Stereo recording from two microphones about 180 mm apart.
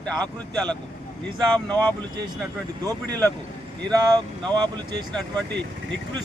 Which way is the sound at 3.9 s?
20° right (ahead or behind).